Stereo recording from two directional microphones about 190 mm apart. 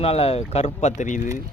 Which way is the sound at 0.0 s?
30° left (ahead or behind).